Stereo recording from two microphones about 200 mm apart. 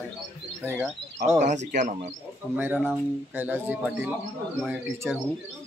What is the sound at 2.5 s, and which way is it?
Speech, 10° right (ahead or behind).